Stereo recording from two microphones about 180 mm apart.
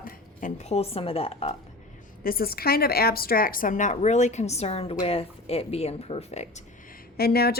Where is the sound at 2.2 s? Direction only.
55° left (ahead or behind); by 6.6 s 40° left (ahead or behind).